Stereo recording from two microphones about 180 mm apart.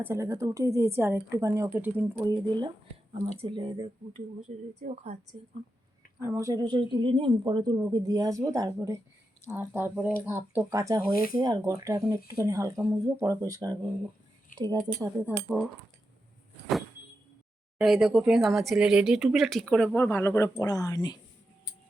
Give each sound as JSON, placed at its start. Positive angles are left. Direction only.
{"t": 0.0, "sound": "a woman's voice", "side_deg": -15}
{"t": 2.2, "sound": "speech", "side_deg": -25}
{"t": 4.4, "sound": "speech", "side_deg": -40}
{"t": 6.1, "sound": "a woman's voice", "side_deg": -15}
{"t": 11.1, "sound": "speech", "side_deg": 55}
{"t": 11.3, "sound": "a woman's voice", "side_deg": -20}
{"t": 17.7, "sound": "speech", "side_deg": 0}